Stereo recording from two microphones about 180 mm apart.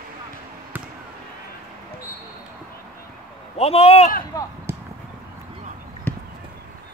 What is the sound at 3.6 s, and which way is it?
Speech, 35° left (ahead or behind).